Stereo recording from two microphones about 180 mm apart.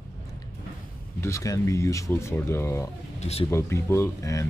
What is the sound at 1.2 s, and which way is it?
Speech, 15° left (ahead or behind).